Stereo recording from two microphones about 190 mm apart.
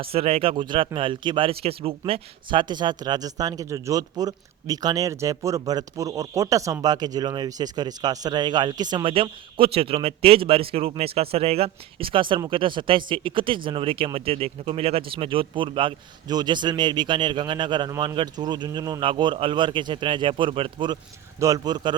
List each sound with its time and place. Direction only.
0.0 s speech: 30° right (ahead or behind)